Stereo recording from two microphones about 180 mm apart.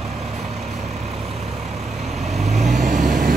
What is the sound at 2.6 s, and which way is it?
Vehicle, 40° right (ahead or behind).